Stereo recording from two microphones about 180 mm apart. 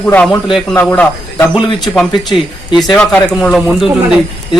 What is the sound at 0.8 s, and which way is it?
Speech, 10° left (ahead or behind).